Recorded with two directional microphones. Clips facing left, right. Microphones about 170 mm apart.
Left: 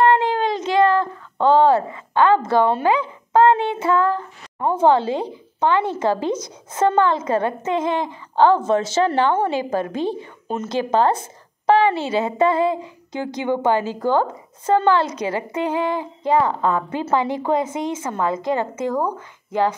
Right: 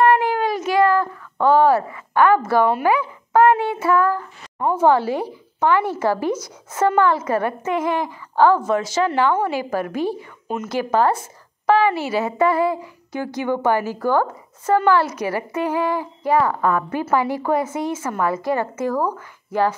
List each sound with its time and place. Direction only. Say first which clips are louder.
0.0 s speech: even; 25° left (ahead or behind)